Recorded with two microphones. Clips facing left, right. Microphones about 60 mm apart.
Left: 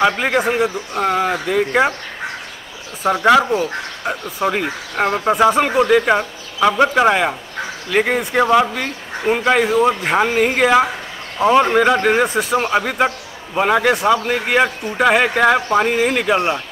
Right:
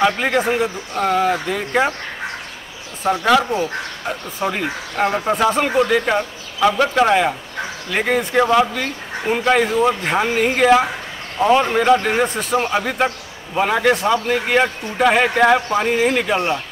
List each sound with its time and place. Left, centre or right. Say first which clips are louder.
0.0 s speech: left 1 dB; centre
3.1 s speech: left 3 dB; centre
4.4 s speech: left 2 dB; centre